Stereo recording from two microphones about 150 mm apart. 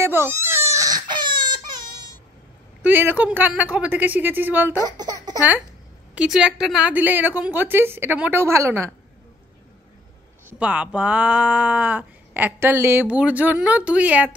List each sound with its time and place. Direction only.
0.0 s crying: 15° right (ahead or behind)
2.8 s speech: 10° right (ahead or behind)
4.9 s a sound: 25° right (ahead or behind)
6.1 s speech: 5° right (ahead or behind)
10.6 s speech: 10° right (ahead or behind)